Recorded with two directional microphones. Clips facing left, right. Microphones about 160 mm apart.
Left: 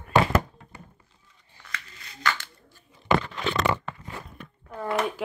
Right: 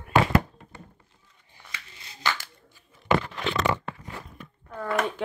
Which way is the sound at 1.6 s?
25° right (ahead or behind).